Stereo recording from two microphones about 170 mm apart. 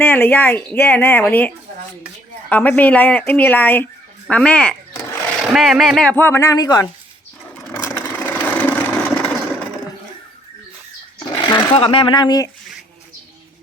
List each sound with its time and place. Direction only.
0.0 s speech: 10° left (ahead or behind)
7.9 s a sound: 15° left (ahead or behind)
11.3 s speech: 25° left (ahead or behind)